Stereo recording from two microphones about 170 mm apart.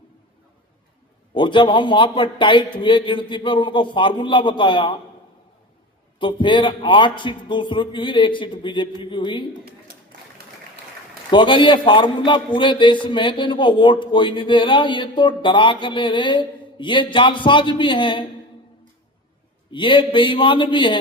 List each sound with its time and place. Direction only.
1.3 s a man's voice: 30° left (ahead or behind)
6.1 s a man's voice: 30° left (ahead or behind)
11.3 s a man's voice: 30° left (ahead or behind)
19.7 s a man's voice: 30° left (ahead or behind)